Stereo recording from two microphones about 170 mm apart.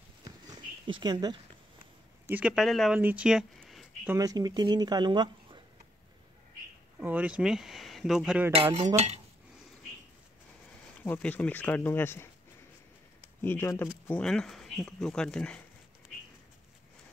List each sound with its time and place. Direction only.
0.2 s a sound: 30° right (ahead or behind)
2.2 s speech: 10° right (ahead or behind)
4.1 s speech: 20° right (ahead or behind)
7.0 s speech: 10° right (ahead or behind)
8.5 s cutlery: 35° right (ahead or behind)
11.0 s speech: 10° left (ahead or behind)